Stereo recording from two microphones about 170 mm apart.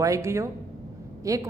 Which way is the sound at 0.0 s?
15° right (ahead or behind).